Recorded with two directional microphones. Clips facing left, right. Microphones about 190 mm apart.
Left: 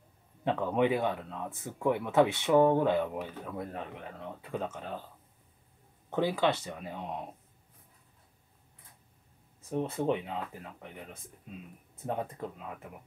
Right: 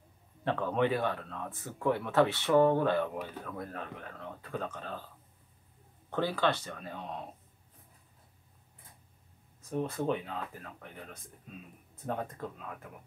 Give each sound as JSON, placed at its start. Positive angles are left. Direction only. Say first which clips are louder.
{"t": 0.4, "sound": "speech", "louder": "left 2 dB", "side_deg": 15}
{"t": 6.0, "sound": "speech", "louder": "left 2 dB", "side_deg": 20}
{"t": 9.7, "sound": "speech", "louder": "left 2 dB", "side_deg": 25}
{"t": 12.1, "sound": "speech", "louder": "left 1 dB", "side_deg": 20}